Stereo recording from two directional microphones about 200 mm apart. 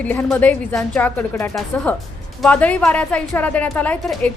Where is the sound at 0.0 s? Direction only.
10° left (ahead or behind).